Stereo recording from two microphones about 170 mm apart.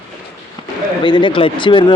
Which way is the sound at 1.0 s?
30° left (ahead or behind).